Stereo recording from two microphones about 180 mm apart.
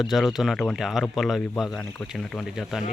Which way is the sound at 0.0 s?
Centre (ahead or behind).